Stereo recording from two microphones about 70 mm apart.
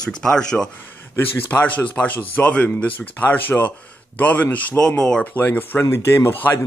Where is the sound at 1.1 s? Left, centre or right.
Left.